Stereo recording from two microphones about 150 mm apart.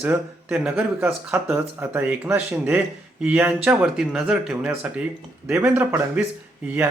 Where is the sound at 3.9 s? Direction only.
Centre (ahead or behind).